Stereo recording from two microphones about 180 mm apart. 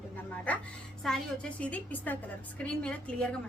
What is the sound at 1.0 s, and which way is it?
A woman's voice, 5° left (ahead or behind).